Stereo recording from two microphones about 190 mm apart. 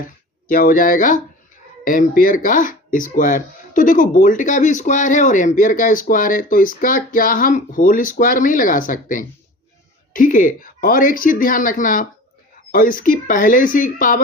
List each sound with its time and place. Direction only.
0.0 s speech: 45° left (ahead or behind)